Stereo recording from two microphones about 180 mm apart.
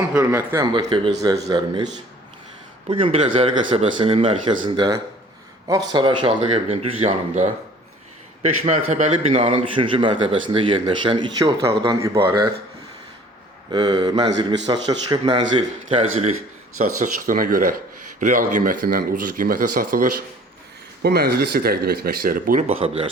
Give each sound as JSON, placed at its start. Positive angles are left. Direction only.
{"t": 0.1, "sound": "a man's voice", "side_deg": -15}
{"t": 2.9, "sound": "a man's voice", "side_deg": -30}
{"t": 13.7, "sound": "a man's voice", "side_deg": -25}
{"t": 16.7, "sound": "speech", "side_deg": -45}
{"t": 21.0, "sound": "speech", "side_deg": -60}
{"t": 22.6, "sound": "speech", "side_deg": -35}